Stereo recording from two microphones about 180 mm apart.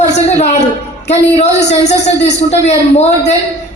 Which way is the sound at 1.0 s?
40° left (ahead or behind).